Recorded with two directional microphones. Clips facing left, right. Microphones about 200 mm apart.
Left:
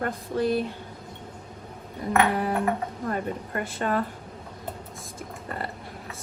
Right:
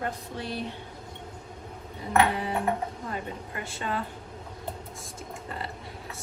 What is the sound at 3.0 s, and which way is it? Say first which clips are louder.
Speech: left 6 dB; 55° left (ahead or behind).